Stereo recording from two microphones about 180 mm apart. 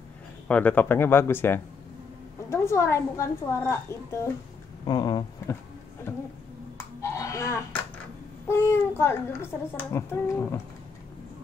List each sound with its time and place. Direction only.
0.5 s a woman's voice: 10° left (ahead or behind); by 5.6 s 25° left (ahead or behind)
6.8 s a sound: 15° left (ahead or behind)
8.5 s a woman's voice: 15° left (ahead or behind)